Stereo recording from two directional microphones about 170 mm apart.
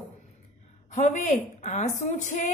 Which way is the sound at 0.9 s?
45° left (ahead or behind).